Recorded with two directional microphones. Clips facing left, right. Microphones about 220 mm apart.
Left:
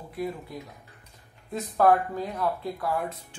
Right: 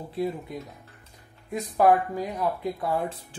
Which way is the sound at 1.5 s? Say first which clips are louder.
Right 1 dB; 15° right (ahead or behind).